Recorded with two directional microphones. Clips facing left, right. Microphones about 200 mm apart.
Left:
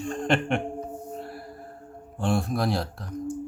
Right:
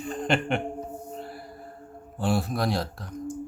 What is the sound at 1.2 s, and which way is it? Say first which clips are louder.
Music: left 1 dB; centre (ahead or behind).